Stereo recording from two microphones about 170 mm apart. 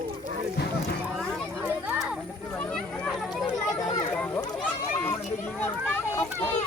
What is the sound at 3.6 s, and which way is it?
Speech, 20° left (ahead or behind).